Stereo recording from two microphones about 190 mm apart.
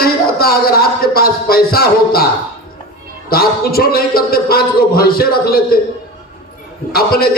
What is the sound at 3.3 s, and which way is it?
A man's voice, 50° left (ahead or behind).